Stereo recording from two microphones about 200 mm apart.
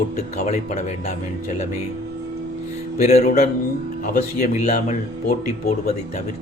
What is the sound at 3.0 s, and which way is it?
Speech, 35° left (ahead or behind).